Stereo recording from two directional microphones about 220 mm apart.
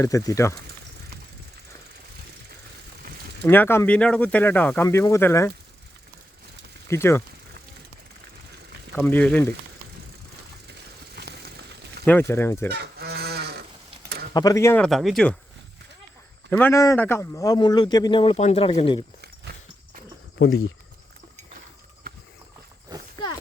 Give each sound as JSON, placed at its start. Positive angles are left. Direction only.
{"t": 0.0, "sound": "speech", "side_deg": 15}
{"t": 3.4, "sound": "speech", "side_deg": 10}
{"t": 6.9, "sound": "speech", "side_deg": 10}
{"t": 9.0, "sound": "speech", "side_deg": 5}
{"t": 10.7, "sound": "a sound", "side_deg": -50}
{"t": 12.3, "sound": "speech", "side_deg": 10}
{"t": 12.7, "sound": "goose", "side_deg": -45}
{"t": 14.3, "sound": "speech", "side_deg": 15}
{"t": 14.8, "sound": "speech", "side_deg": 0}
{"t": 16.5, "sound": "speech", "side_deg": 10}
{"t": 20.4, "sound": "speech", "side_deg": 55}